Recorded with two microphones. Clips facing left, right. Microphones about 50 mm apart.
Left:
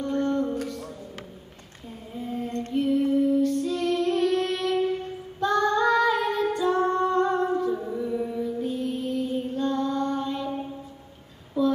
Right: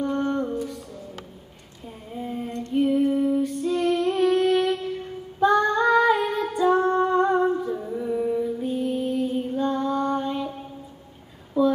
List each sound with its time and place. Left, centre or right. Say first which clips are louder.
0.0 s music: right 1 dB; centre
2.1 s a sound: right 1 dB; centre
2.7 s female singing: right 2 dB; centre
6.9 s humming: right 3 dB; centre
7.7 s music: right 1 dB; centre
11.6 s a sound: right 3 dB; centre